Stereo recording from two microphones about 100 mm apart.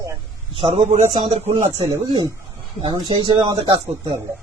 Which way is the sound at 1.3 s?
90° right.